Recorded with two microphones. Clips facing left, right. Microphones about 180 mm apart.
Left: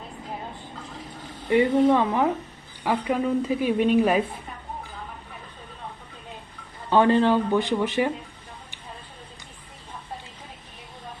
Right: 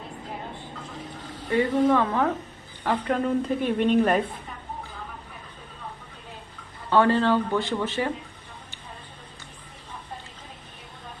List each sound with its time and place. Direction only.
1.5 s a woman's voice: 20° left (ahead or behind)
6.9 s speech: 15° left (ahead or behind)